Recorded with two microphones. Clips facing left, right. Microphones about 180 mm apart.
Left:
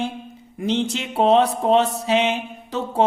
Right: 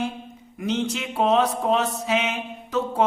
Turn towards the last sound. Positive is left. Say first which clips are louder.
# left 1 dB
turn(degrees=30)  # may be behind; listen again after turning